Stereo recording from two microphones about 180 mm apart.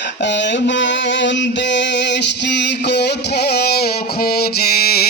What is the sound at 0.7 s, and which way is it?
Music, 90° left.